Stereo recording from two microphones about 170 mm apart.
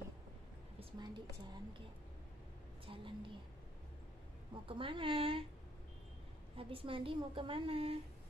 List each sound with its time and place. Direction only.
0.7 s a woman's voice: 25° right (ahead or behind)
2.9 s a woman's voice: 30° right (ahead or behind)
4.6 s a woman's voice: 30° right (ahead or behind)
6.5 s a woman's voice: 35° right (ahead or behind)